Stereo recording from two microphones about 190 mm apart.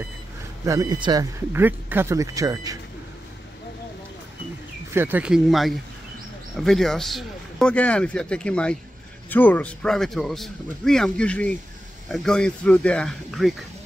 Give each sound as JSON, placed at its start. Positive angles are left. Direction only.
{"t": 0.7, "sound": "speech", "side_deg": -20}
{"t": 1.5, "sound": "speech", "side_deg": -10}
{"t": 4.9, "sound": "speech", "side_deg": -10}